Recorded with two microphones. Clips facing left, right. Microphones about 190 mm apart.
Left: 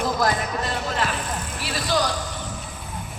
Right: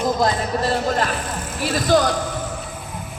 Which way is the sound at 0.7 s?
40° right (ahead or behind).